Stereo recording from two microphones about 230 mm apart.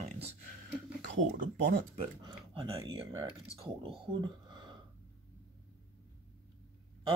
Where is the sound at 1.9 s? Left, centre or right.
Right.